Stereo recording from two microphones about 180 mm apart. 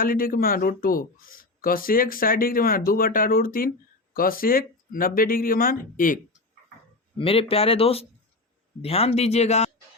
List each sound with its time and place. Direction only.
0.0 s speech: 50° left (ahead or behind)
7.2 s a man's voice: 30° left (ahead or behind)